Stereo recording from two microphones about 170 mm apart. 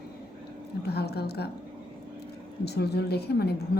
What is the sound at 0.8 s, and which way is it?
Speech, 70° left (ahead or behind).